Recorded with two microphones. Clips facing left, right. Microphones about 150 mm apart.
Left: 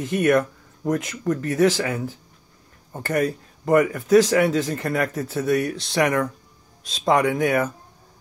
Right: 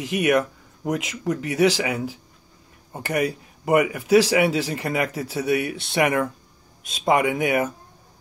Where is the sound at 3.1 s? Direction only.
15° right (ahead or behind).